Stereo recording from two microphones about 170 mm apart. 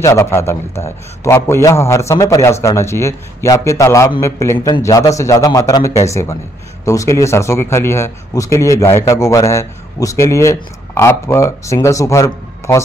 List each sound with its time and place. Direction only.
0.0 s a man's voice: 15° left (ahead or behind)